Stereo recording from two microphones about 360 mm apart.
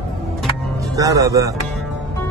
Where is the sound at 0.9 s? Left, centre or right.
Centre.